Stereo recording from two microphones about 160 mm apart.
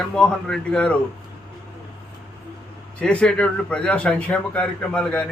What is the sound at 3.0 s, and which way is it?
A man's voice, 5° left (ahead or behind).